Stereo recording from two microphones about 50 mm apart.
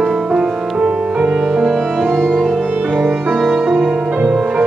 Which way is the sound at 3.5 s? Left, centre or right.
Right.